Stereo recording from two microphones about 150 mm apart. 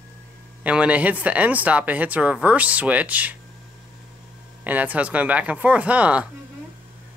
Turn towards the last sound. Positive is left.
turn(degrees=-10)  # may be behind; listen again after turning